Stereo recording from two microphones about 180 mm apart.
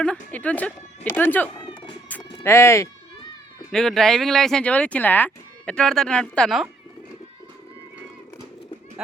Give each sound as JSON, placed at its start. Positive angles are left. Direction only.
{"t": 0.0, "sound": "speech", "side_deg": 5}
{"t": 1.6, "sound": "cat", "side_deg": 25}
{"t": 2.0, "sound": "bleat", "side_deg": 10}
{"t": 3.7, "sound": "speech", "side_deg": 0}